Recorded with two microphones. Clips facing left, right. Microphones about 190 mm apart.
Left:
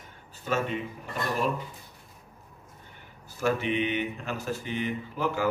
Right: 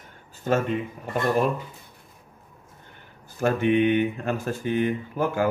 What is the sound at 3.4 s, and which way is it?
Speech, 55° right (ahead or behind).